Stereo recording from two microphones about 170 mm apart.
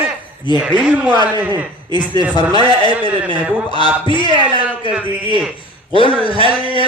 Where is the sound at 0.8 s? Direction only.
5° right (ahead or behind).